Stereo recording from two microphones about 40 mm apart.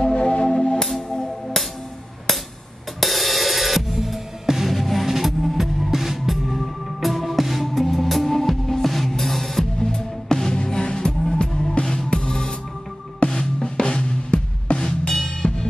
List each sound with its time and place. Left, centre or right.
0.0 s music: left
3.0 s music: centre; by 14.9 s left
14.9 s music: centre